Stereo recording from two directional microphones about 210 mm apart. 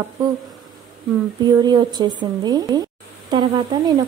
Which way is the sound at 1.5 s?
20° right (ahead or behind).